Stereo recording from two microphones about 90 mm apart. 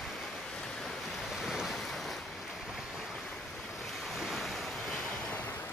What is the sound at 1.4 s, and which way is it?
Waves, centre (ahead or behind).